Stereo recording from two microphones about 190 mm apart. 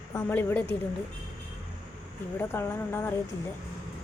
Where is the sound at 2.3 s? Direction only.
15° left (ahead or behind).